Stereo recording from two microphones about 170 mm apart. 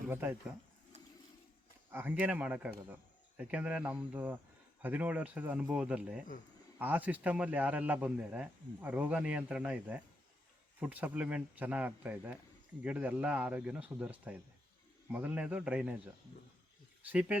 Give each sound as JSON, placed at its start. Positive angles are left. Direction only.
{"t": 0.1, "sound": "a man's voice", "side_deg": -10}
{"t": 0.9, "sound": "a sound", "side_deg": -40}
{"t": 1.9, "sound": "a man's voice", "side_deg": -10}
{"t": 17.1, "sound": "a man's voice", "side_deg": -5}